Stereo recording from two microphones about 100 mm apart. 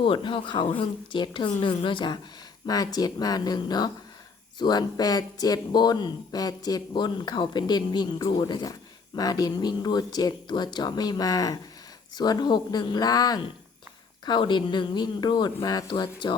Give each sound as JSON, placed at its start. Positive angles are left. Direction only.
{"t": 0.0, "sound": "speech", "side_deg": 60}
{"t": 2.6, "sound": "speech", "side_deg": 40}
{"t": 14.3, "sound": "speech", "side_deg": 50}